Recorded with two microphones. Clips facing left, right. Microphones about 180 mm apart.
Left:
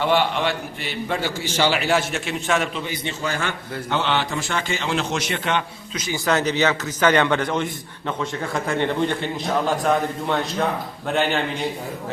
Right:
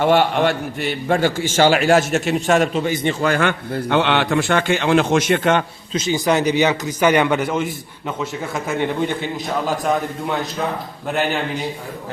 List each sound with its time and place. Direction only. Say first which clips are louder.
0.0 s a man's voice: right 5 dB; 50° right (ahead or behind)
5.9 s a man's voice: right 4 dB; 25° right (ahead or behind); by 11.3 s 5° right (ahead or behind)